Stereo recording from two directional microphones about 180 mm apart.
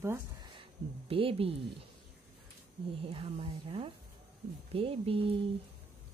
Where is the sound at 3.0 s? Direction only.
30° right (ahead or behind).